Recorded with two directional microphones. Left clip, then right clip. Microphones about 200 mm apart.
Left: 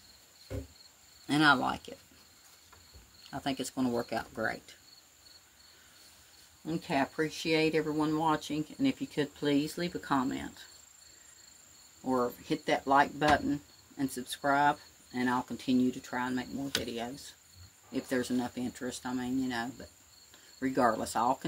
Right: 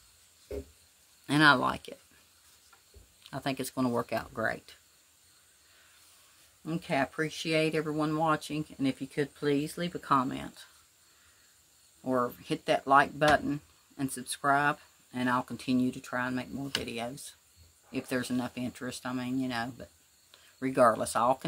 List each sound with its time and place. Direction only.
1.2 s speech: 30° right (ahead or behind)
3.3 s speech: 35° right (ahead or behind)
6.6 s speech: 25° right (ahead or behind)
12.1 s speech: 30° right (ahead or behind)